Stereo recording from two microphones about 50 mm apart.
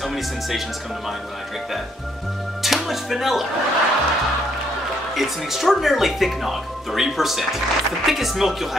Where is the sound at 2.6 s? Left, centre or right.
Centre.